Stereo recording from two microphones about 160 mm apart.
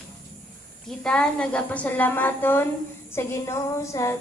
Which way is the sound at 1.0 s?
5° left (ahead or behind).